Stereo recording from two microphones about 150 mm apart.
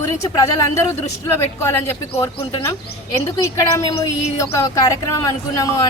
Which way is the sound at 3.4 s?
20° left (ahead or behind).